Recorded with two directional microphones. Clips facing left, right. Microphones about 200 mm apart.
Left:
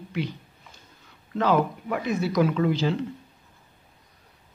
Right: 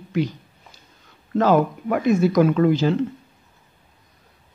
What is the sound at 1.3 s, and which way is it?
Speech, 45° right (ahead or behind).